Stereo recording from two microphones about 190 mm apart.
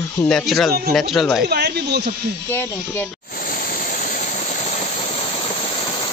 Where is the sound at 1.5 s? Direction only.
60° right (ahead or behind).